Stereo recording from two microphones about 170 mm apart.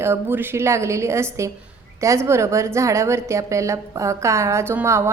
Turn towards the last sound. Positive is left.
turn(degrees=-15)  # may be behind; listen again after turning